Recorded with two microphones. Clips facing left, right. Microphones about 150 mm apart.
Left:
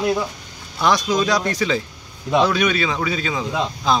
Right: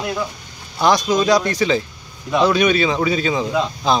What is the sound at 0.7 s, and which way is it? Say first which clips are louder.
Speech: right 3 dB; 35° right (ahead or behind).